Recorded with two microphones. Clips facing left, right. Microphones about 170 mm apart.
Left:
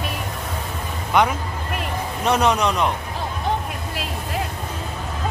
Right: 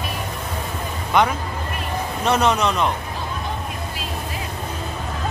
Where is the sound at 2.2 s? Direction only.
15° left (ahead or behind).